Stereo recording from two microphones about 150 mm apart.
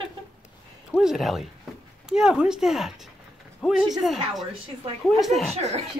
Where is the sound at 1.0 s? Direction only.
Centre (ahead or behind).